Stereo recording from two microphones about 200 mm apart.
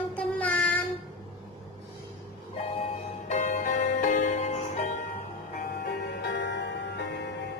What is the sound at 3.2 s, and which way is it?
Music, 35° left (ahead or behind).